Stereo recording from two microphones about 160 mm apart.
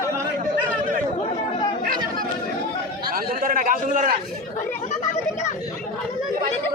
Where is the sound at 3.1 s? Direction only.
65° right (ahead or behind).